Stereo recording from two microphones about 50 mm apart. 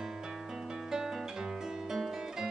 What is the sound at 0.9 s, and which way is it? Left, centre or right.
Music, centre.